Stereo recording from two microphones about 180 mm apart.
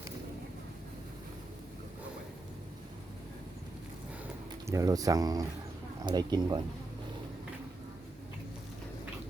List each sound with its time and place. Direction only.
4.6 s speech: 15° right (ahead or behind)